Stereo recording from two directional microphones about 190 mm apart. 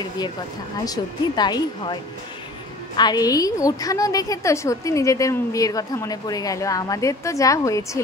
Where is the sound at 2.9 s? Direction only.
20° left (ahead or behind).